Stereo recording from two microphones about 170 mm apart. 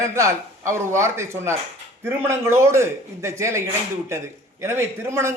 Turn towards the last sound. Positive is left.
turn(degrees=-15)  # may be behind; listen again after turning